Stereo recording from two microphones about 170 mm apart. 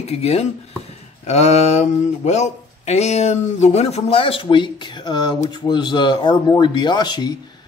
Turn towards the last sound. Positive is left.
turn(degrees=25)  # may be behind; listen again after turning